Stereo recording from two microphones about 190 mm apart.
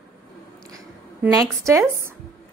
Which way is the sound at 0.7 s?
20° right (ahead or behind).